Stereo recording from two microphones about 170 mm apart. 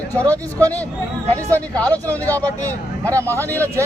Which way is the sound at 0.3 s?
10° left (ahead or behind).